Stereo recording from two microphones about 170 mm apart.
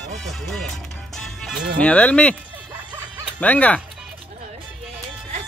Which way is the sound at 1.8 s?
10° left (ahead or behind).